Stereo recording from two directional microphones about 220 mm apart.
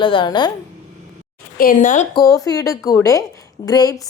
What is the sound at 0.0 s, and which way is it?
Speech, 20° left (ahead or behind).